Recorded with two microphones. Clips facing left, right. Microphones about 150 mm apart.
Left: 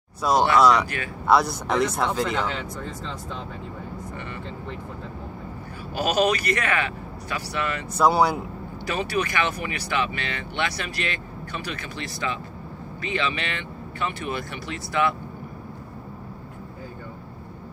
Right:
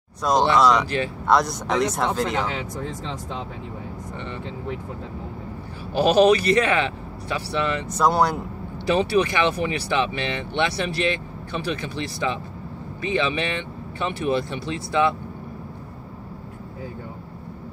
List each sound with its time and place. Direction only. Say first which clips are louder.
0.2 s speech: even; 5° left (ahead or behind)
5.9 s speech: right 6 dB; 30° right (ahead or behind)
7.9 s speech: left 1 dB; 5° left (ahead or behind)
8.8 s speech: right 6 dB; 25° right (ahead or behind)